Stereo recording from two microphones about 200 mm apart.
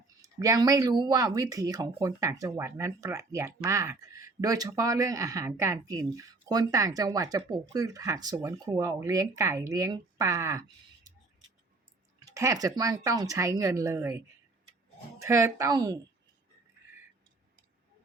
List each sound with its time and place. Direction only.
0.2 s speech: 15° right (ahead or behind)
12.3 s speech: 15° right (ahead or behind)
15.2 s speech: 15° right (ahead or behind)